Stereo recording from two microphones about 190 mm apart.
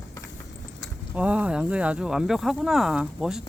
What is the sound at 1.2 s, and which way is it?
Speech, 5° right (ahead or behind).